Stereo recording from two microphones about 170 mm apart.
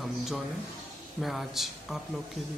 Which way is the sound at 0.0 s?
Centre (ahead or behind).